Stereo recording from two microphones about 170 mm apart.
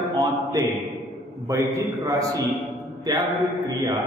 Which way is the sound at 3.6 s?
20° right (ahead or behind).